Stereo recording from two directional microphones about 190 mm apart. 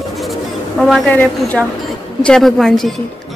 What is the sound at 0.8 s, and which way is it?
A woman's voice, centre (ahead or behind).